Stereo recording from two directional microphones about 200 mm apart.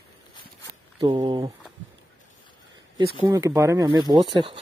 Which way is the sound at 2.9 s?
25° right (ahead or behind).